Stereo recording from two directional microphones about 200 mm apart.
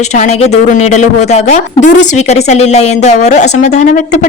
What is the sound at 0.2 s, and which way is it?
Speech, 35° left (ahead or behind).